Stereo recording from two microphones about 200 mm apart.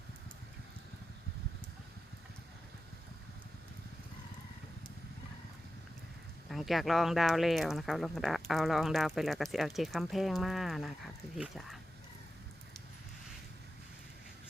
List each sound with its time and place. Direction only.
6.5 s speech: centre (ahead or behind)